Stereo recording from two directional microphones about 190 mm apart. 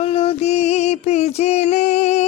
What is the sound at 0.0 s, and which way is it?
Mantra, 30° left (ahead or behind).